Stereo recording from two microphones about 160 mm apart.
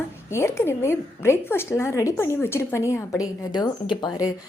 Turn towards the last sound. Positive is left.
turn(degrees=25)  # may be behind; listen again after turning